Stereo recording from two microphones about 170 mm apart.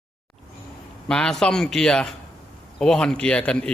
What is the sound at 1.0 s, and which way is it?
A man's voice, 5° left (ahead or behind).